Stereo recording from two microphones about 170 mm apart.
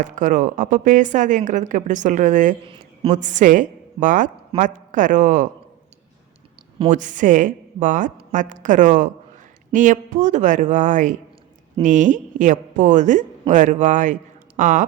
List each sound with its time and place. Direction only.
0.0 s a woman's voice: 50° right (ahead or behind)
2.6 s a sound: 30° right (ahead or behind)
3.2 s a woman's voice: 45° right (ahead or behind)
6.9 s a woman's voice: 50° right (ahead or behind)